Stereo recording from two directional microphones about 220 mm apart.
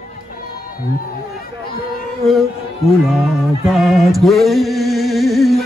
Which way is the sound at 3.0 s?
Centre (ahead or behind).